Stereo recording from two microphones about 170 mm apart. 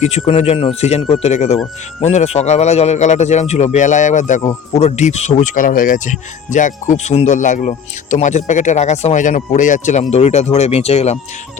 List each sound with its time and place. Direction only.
0.0 s a man's voice: 40° left (ahead or behind)